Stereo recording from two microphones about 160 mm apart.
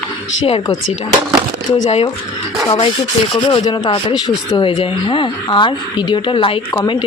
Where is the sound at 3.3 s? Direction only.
30° left (ahead or behind).